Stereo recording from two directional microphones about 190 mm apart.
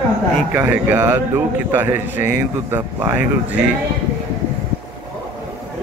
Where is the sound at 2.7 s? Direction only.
15° right (ahead or behind).